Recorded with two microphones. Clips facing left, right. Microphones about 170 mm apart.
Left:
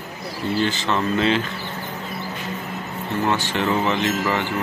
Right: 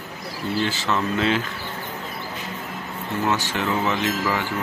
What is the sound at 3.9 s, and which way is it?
Speech, 5° right (ahead or behind).